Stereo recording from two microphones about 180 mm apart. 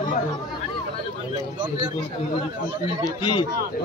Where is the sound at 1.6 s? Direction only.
25° right (ahead or behind).